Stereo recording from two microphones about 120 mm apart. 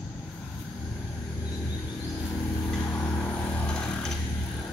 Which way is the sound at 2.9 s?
20° left (ahead or behind).